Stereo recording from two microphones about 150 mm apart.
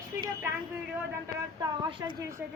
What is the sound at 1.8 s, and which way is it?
Speech, 35° right (ahead or behind).